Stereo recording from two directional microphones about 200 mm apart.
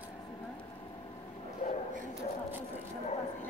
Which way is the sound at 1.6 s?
35° left (ahead or behind).